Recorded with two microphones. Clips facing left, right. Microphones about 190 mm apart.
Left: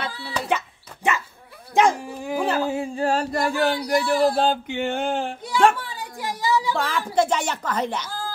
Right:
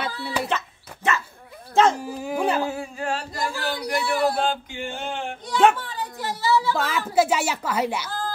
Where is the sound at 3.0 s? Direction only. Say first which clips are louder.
Left 7 dB; 35° left (ahead or behind).